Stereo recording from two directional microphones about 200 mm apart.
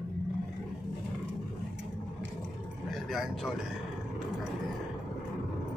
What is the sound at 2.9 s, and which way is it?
Speech, centre (ahead or behind).